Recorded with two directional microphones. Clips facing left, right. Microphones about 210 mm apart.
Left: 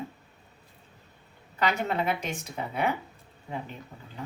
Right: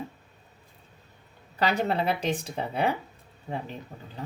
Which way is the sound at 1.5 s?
35° right (ahead or behind).